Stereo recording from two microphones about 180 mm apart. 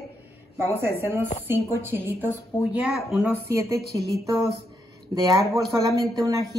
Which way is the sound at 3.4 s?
15° right (ahead or behind).